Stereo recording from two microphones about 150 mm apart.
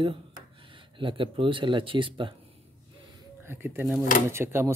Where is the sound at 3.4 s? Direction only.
15° right (ahead or behind).